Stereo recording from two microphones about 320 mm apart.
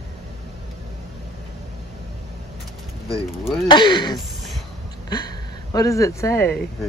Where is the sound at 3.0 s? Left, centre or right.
Centre.